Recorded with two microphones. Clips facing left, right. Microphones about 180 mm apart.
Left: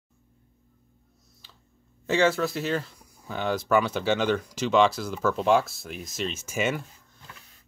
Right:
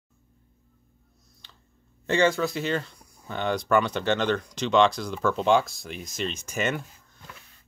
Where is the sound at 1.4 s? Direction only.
5° left (ahead or behind).